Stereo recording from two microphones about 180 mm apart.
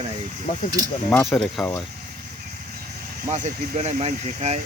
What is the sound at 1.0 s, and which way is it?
Speech, 10° left (ahead or behind).